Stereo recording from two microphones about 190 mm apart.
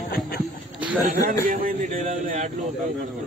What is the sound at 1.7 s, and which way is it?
Speech, 35° right (ahead or behind).